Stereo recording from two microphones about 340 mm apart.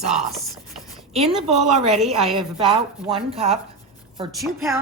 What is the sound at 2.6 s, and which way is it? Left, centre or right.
A woman's voice, centre.